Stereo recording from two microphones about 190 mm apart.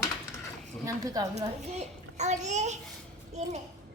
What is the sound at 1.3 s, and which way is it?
A child's voice, 35° right (ahead or behind).